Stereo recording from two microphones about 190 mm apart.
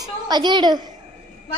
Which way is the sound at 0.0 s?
20° right (ahead or behind).